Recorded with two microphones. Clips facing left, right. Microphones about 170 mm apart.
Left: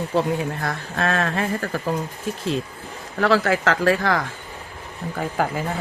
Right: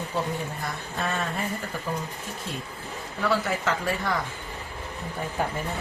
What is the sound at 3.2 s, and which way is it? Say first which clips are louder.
Speech: left 7 dB; 90° left.